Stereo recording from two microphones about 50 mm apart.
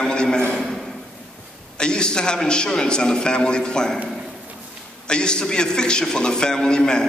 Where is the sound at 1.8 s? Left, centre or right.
Centre.